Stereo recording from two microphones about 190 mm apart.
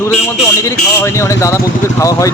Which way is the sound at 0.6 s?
15° left (ahead or behind).